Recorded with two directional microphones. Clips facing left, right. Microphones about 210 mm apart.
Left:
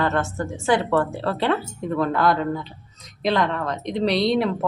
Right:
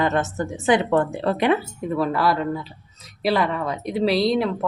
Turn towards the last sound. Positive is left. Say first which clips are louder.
# even
turn(degrees=0)  # may be behind; listen again after turning